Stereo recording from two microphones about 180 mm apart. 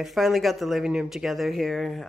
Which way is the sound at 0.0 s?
Centre (ahead or behind).